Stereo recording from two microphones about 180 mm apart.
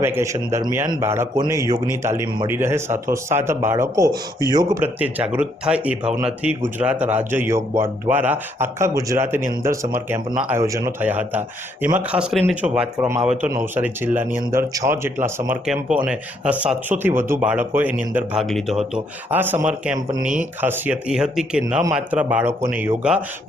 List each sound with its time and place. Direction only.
0.0 s speech: 15° right (ahead or behind)
4.8 s speech: 10° right (ahead or behind)
20.2 s speech: 45° right (ahead or behind)
20.6 s speech: 10° right (ahead or behind)